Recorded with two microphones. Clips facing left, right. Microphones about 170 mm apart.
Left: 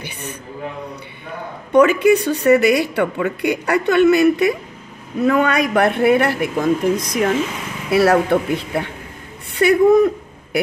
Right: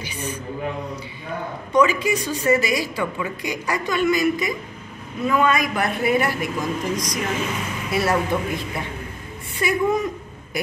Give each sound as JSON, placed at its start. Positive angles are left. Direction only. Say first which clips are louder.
{"t": 1.7, "sound": "a woman's voice", "louder": "left 7 dB", "side_deg": 60}